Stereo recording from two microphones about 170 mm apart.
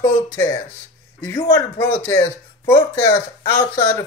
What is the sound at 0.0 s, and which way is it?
Speech, 15° left (ahead or behind).